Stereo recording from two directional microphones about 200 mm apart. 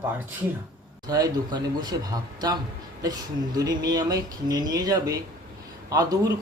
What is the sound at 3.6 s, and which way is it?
Speech, 20° right (ahead or behind).